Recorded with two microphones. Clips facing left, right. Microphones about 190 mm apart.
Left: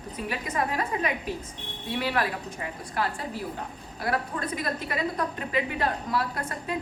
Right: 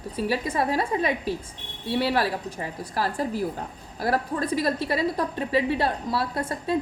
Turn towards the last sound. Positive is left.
turn(degrees=-30)  # may be behind; listen again after turning